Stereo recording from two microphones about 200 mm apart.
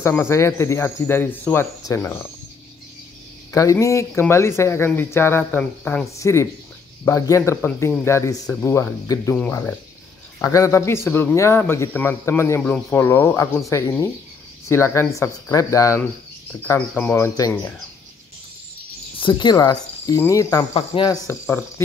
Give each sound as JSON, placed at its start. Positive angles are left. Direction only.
{"t": 0.0, "sound": "speech", "side_deg": 15}
{"t": 3.5, "sound": "speech", "side_deg": 15}
{"t": 19.1, "sound": "speech", "side_deg": 25}